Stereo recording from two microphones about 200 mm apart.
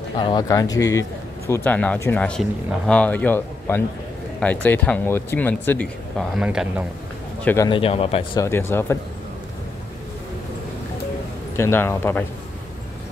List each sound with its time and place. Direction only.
0.2 s speech: 20° left (ahead or behind); by 6.7 s 5° right (ahead or behind)
7.4 s speech: 15° left (ahead or behind)
8.4 s speech: 10° left (ahead or behind)
11.5 s speech: 10° left (ahead or behind)